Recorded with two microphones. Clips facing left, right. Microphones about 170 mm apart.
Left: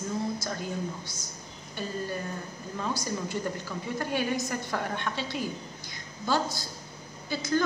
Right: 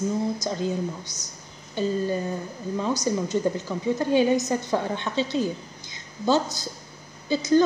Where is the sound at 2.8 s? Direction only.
20° right (ahead or behind).